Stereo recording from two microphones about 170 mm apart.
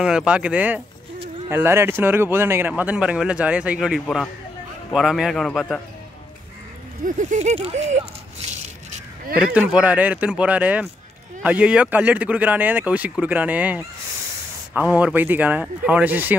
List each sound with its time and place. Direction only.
0.0 s a man's voice: 5° right (ahead or behind)
7.1 s speech: 45° right (ahead or behind)
9.4 s speech: 5° right (ahead or behind)